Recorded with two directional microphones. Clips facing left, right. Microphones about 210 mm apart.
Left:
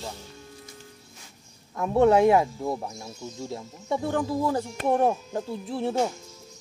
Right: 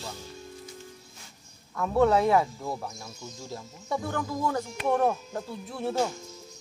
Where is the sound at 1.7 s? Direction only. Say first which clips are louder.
Left 3 dB; 25° left (ahead or behind).